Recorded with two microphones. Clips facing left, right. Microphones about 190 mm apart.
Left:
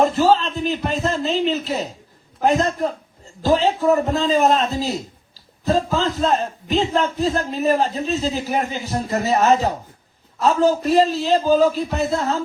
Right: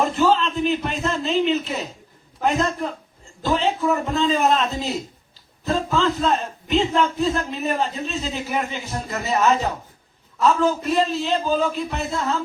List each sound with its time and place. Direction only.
0.0 s a man's voice: 35° left (ahead or behind)